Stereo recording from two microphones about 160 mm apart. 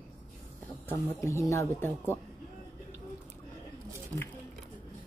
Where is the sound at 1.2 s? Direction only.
20° left (ahead or behind).